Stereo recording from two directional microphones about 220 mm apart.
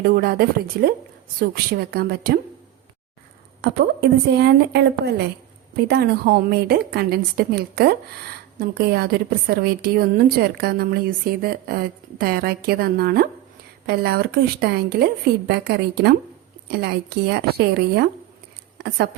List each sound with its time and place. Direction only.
0.0 s a woman's voice: 40° right (ahead or behind)
4.3 s a woman's voice: 50° right (ahead or behind)